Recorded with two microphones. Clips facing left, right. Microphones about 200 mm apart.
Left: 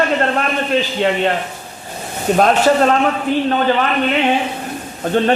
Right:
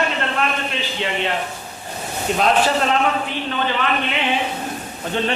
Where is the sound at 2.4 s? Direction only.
50° left (ahead or behind).